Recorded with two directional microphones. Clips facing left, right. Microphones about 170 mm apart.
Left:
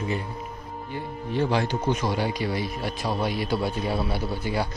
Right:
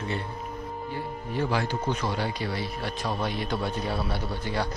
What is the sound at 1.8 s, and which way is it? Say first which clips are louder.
A man's voice: left 3 dB; 10° left (ahead or behind).